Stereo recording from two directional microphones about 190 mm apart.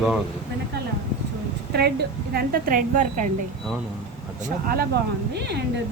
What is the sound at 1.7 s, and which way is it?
A woman's voice, 55° right (ahead or behind).